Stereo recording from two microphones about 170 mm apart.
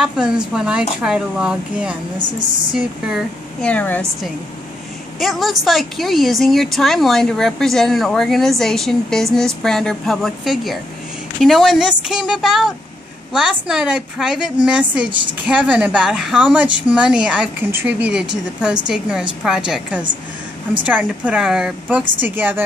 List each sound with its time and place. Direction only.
0.5 s speech: 5° right (ahead or behind)
3.7 s speech: 10° left (ahead or behind)
5.2 s speech: centre (ahead or behind)